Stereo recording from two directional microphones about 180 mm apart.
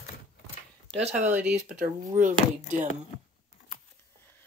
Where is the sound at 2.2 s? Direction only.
45° right (ahead or behind).